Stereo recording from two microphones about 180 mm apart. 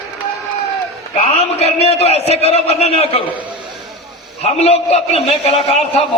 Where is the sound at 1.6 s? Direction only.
35° left (ahead or behind).